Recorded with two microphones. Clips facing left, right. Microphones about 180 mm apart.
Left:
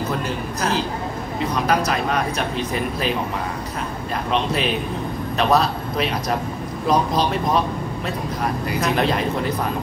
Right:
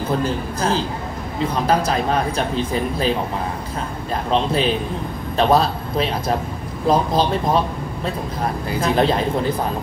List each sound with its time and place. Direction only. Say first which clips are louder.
0.2 s speech: right 3 dB; 30° right (ahead or behind)
4.3 s a man's voice: right 3 dB; 30° right (ahead or behind)
8.6 s speech: right 3 dB; 30° right (ahead or behind)